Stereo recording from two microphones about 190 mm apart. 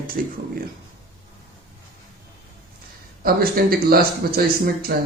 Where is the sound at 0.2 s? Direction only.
50° right (ahead or behind).